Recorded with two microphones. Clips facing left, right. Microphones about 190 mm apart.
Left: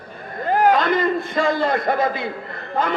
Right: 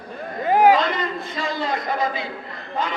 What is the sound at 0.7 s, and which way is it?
A man's voice, 55° left (ahead or behind).